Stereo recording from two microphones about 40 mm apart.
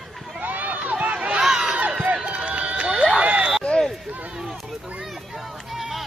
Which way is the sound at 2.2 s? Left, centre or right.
Right.